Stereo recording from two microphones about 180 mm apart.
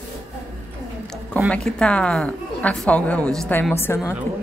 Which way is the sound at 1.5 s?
5° left (ahead or behind).